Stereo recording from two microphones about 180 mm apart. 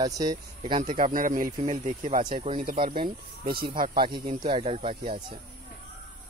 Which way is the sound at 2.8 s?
30° right (ahead or behind).